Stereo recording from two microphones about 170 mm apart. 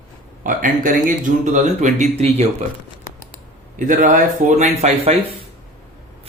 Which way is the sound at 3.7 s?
50° right (ahead or behind).